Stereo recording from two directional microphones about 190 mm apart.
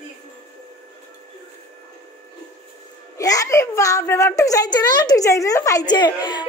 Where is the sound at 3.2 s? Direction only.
20° left (ahead or behind).